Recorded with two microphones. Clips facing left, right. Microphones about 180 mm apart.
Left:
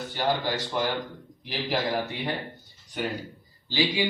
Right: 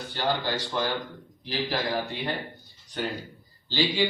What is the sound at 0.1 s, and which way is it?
Speech, 15° left (ahead or behind).